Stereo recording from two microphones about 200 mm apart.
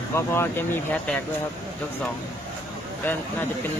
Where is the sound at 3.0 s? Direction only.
10° left (ahead or behind).